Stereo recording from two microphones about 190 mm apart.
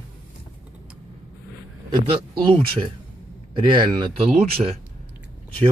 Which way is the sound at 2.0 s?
25° right (ahead or behind).